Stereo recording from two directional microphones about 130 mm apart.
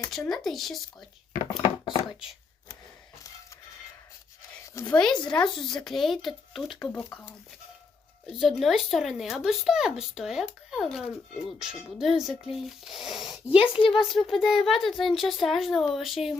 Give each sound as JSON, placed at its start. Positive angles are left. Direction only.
{"t": 0.1, "sound": "speech", "side_deg": 0}
{"t": 1.6, "sound": "a sound", "side_deg": 40}
{"t": 4.6, "sound": "speech", "side_deg": 25}
{"t": 4.9, "sound": "speech", "side_deg": 5}
{"t": 6.9, "sound": "speech", "side_deg": 10}
{"t": 8.4, "sound": "speech", "side_deg": 0}